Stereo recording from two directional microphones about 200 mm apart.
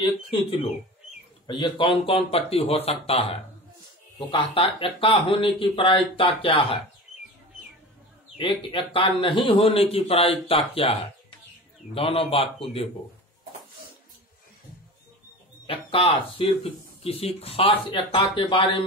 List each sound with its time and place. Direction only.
0.0 s speech: 25° left (ahead or behind)
8.4 s speech: 25° left (ahead or behind)
15.6 s speech: 25° left (ahead or behind)